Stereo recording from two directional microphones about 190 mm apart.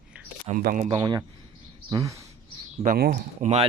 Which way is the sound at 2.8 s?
50° right (ahead or behind).